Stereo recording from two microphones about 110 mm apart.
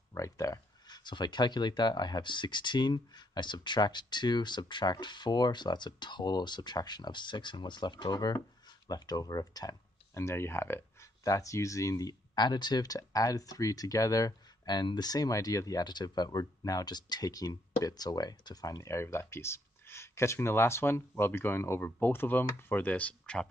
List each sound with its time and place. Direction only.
0.1 s speech: 30° left (ahead or behind); by 23.5 s 10° left (ahead or behind)